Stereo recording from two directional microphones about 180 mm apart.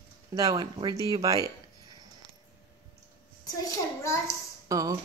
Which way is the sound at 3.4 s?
20° left (ahead or behind).